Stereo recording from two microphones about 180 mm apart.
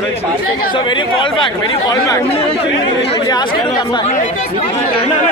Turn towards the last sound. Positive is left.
turn(degrees=25)  # may be behind; listen again after turning